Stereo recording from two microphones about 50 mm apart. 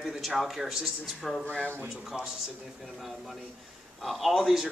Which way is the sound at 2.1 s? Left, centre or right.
Centre.